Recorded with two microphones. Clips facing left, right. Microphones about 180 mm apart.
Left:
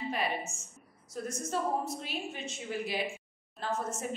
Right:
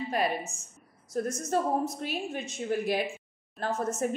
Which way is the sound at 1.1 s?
50° right (ahead or behind).